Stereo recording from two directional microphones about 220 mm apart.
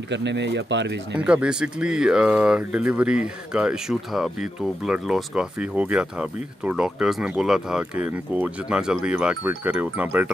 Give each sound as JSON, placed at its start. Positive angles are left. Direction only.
{"t": 0.1, "sound": "speech", "side_deg": -55}
{"t": 1.2, "sound": "speech", "side_deg": -5}